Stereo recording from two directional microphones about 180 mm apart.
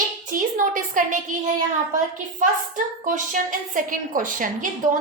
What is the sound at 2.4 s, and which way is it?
A woman's voice, 45° right (ahead or behind).